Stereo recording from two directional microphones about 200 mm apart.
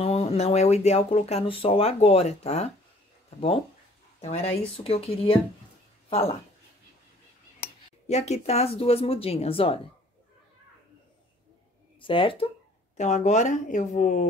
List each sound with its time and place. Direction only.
0.0 s speech: 30° left (ahead or behind)
4.2 s speech: 30° left (ahead or behind)
8.1 s speech: 30° left (ahead or behind)
12.0 s speech: 25° left (ahead or behind)
12.9 s speech: 35° left (ahead or behind)